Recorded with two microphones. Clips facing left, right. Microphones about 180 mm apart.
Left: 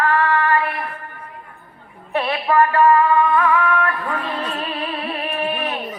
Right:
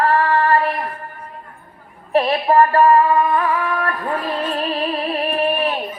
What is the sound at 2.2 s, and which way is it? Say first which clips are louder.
Music: right 3 dB; 35° right (ahead or behind).